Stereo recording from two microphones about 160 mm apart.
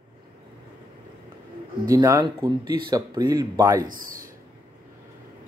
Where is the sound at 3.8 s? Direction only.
60° right (ahead or behind).